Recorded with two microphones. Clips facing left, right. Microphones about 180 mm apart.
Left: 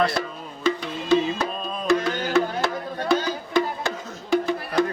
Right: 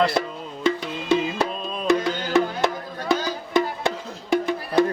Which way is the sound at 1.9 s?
20° right (ahead or behind).